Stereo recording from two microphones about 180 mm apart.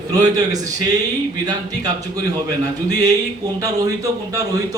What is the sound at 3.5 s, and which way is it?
Speech, 20° right (ahead or behind).